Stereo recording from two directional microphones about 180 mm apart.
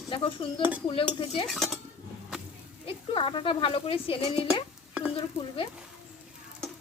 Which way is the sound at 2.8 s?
30° left (ahead or behind).